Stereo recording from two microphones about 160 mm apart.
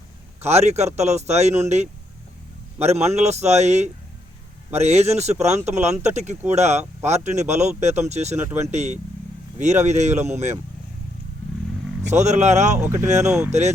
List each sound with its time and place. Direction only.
0.4 s speech: 45° right (ahead or behind)
12.0 s speech: 45° right (ahead or behind)